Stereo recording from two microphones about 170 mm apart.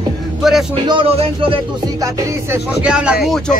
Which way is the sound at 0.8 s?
30° right (ahead or behind).